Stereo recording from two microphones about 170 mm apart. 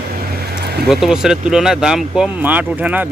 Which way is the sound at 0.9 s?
Centre (ahead or behind).